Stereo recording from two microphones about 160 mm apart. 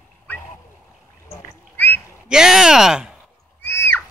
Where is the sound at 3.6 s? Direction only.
15° left (ahead or behind).